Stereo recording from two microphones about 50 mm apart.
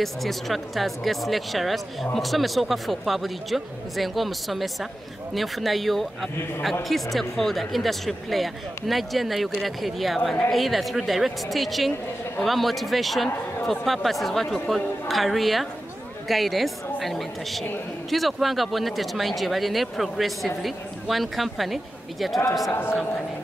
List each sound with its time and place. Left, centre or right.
0.0 s a man's voice: centre
22.7 s a man's voice: left